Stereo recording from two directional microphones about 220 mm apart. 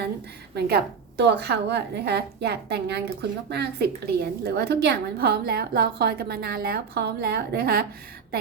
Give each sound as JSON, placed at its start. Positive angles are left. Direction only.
{"t": 0.5, "sound": "a woman's voice", "side_deg": -50}